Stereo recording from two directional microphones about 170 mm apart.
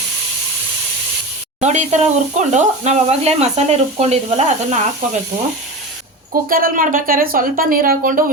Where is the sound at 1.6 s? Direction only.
45° right (ahead or behind).